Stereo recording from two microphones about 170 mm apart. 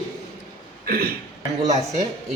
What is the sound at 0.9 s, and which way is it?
Speech, 60° right (ahead or behind).